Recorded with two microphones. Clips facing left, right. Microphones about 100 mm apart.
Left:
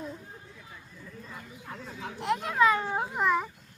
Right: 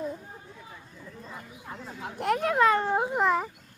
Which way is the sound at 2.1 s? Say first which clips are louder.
Right 2 dB; 55° right (ahead or behind).